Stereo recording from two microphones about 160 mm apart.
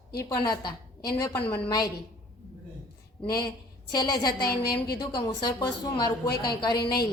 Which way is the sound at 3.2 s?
25° left (ahead or behind).